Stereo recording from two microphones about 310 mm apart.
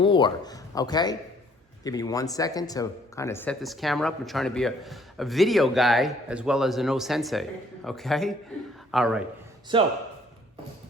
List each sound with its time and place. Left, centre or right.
0.0 s a man's voice: centre
9.7 s speech: centre